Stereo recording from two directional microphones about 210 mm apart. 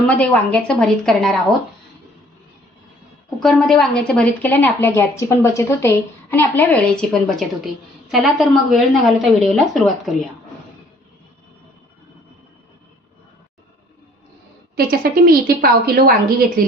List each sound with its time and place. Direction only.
0.2 s a woman's voice: 5° left (ahead or behind)
3.2 s a woman's voice: centre (ahead or behind)
14.8 s a woman's voice: 45° right (ahead or behind)